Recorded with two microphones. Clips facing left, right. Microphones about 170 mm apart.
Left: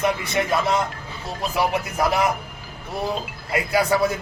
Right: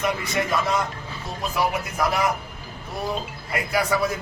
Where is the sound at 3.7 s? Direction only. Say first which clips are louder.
Left 3 dB; 25° left (ahead or behind).